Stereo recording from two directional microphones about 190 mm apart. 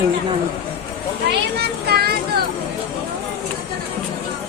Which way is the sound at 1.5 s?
55° right (ahead or behind).